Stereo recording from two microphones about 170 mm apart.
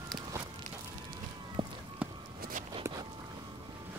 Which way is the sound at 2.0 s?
10° right (ahead or behind).